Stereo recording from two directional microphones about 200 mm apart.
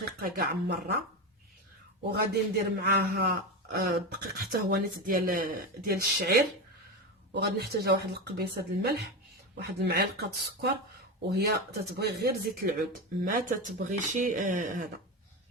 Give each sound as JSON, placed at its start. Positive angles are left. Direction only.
{"t": 0.0, "sound": "speech", "side_deg": -50}
{"t": 2.0, "sound": "speech", "side_deg": -55}